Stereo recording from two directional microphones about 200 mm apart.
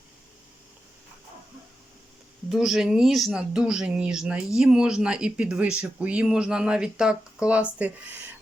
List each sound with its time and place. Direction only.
2.5 s speech: centre (ahead or behind)